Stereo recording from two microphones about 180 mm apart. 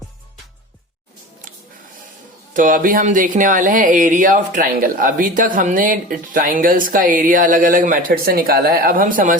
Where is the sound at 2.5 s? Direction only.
50° right (ahead or behind).